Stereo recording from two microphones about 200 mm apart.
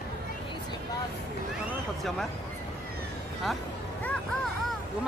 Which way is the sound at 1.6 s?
Centre (ahead or behind).